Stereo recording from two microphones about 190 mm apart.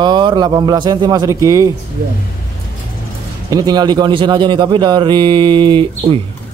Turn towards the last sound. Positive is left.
turn(degrees=-25)  # may be behind; listen again after turning